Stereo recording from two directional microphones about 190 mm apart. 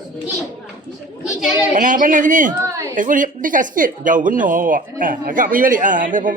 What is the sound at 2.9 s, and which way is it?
Speech, 45° right (ahead or behind).